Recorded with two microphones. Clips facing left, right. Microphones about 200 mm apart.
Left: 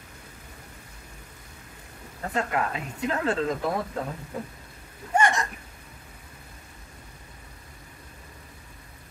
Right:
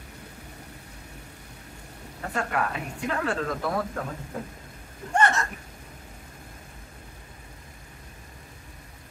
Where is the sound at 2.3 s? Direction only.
20° left (ahead or behind).